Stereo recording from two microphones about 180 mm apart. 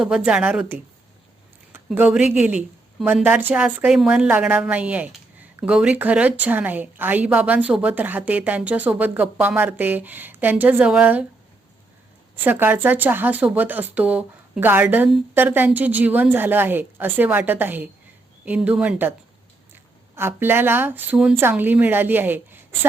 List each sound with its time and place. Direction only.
0.0 s a woman's voice: 5° right (ahead or behind)
1.9 s a woman's voice: 5° right (ahead or behind)
12.4 s a woman's voice: 10° right (ahead or behind)
20.1 s a woman's voice: 10° right (ahead or behind)